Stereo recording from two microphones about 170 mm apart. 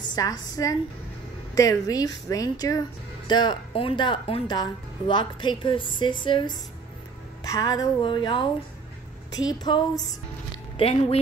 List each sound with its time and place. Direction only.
0.1 s speech: 25° left (ahead or behind)
9.6 s speech: 25° left (ahead or behind)
10.8 s speech: 35° left (ahead or behind)